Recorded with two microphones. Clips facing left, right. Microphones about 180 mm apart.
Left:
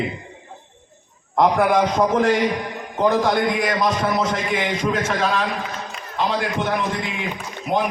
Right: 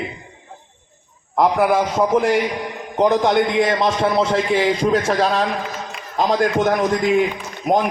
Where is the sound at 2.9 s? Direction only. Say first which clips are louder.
Right 3 dB; 20° right (ahead or behind); by 7.8 s 45° right (ahead or behind).